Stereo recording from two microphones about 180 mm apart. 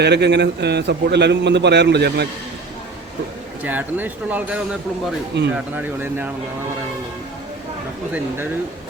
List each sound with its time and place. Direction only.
0.0 s a man's voice: 70° right (ahead or behind)
3.6 s speech: 10° right (ahead or behind)
5.3 s a man's voice: 75° right (ahead or behind)
5.7 s speech: 10° right (ahead or behind)